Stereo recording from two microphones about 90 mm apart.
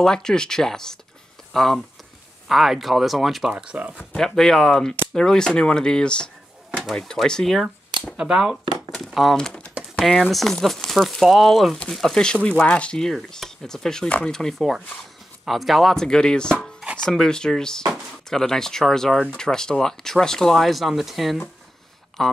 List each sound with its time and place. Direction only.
0.0 s speech: 5° left (ahead or behind)
3.5 s speech: 15° right (ahead or behind)
4.2 s speech: 5° left (ahead or behind)
8.2 s speech: 10° right (ahead or behind)
8.9 s crumpling: centre (ahead or behind)
9.9 s speech: centre (ahead or behind)